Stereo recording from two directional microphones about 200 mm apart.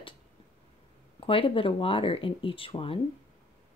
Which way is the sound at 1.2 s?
25° left (ahead or behind).